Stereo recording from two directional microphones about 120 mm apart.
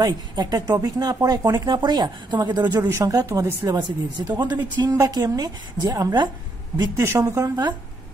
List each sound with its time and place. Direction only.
0.0 s speech: 35° right (ahead or behind)